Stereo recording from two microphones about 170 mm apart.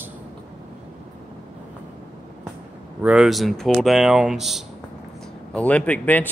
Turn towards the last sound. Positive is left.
turn(degrees=10)  # may be behind; listen again after turning